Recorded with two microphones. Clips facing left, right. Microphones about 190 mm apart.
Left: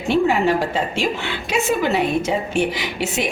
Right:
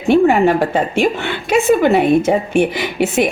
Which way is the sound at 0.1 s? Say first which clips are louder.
Right 6 dB; 55° right (ahead or behind).